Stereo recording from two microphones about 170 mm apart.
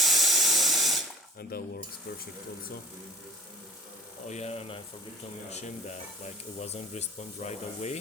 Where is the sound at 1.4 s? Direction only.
65° left (ahead or behind).